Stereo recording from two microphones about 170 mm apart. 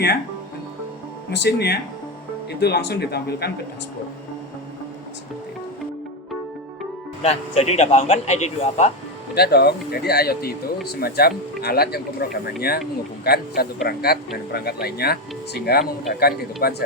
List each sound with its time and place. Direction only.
1.3 s speech: 80° left
7.2 s a man's voice: 40° left (ahead or behind)
9.3 s speech: 70° left (ahead or behind)